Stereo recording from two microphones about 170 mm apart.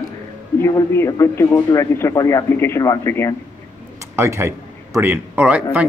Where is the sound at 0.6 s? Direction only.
15° left (ahead or behind).